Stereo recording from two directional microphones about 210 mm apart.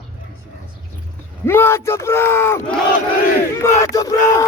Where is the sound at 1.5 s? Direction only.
10° left (ahead or behind).